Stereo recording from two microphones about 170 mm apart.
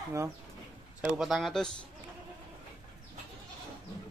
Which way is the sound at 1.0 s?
Centre (ahead or behind).